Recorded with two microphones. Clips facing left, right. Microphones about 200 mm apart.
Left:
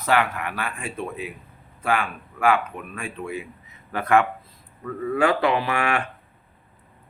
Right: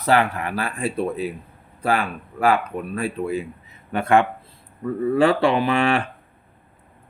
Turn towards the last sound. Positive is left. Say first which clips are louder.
# right 5 dB
turn(degrees=-30)  # may be behind; listen again after turning